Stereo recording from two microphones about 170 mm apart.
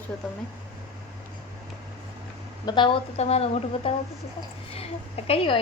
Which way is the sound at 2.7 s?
30° left (ahead or behind).